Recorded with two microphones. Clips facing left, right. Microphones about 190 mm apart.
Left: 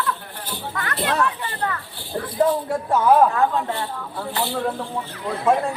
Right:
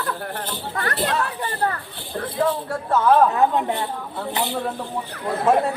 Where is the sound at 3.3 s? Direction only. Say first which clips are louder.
Right 2 dB; 20° right (ahead or behind).